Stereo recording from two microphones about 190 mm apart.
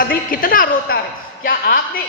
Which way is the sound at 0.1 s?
50° left (ahead or behind).